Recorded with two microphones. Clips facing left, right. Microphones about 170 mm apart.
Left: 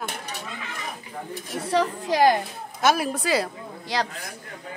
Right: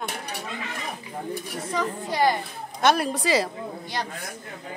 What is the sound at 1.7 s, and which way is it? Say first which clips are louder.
Speech: left 5 dB; 80° left.